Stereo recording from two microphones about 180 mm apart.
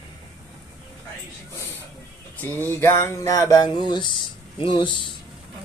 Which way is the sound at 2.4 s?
10° left (ahead or behind).